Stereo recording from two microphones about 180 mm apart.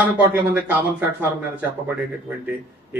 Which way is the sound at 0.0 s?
10° right (ahead or behind).